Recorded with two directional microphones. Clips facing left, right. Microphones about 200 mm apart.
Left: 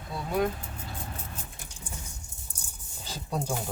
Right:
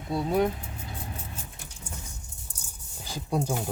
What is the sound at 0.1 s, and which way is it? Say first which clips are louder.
Speech: right 4 dB; 25° right (ahead or behind).